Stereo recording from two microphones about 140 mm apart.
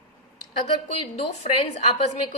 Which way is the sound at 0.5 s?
45° left (ahead or behind).